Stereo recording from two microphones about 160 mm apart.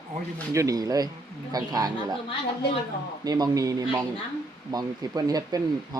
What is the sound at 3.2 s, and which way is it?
Speech, 25° right (ahead or behind).